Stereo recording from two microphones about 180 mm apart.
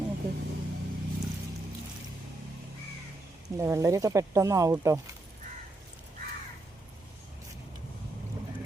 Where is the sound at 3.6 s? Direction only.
15° right (ahead or behind).